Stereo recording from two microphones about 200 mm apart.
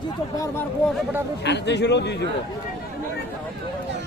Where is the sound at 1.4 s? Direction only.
60° left (ahead or behind).